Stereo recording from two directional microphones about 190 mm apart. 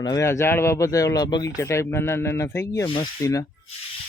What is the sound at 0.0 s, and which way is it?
Speech, 20° left (ahead or behind).